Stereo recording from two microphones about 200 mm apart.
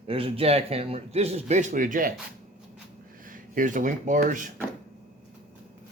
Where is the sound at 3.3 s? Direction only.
40° right (ahead or behind).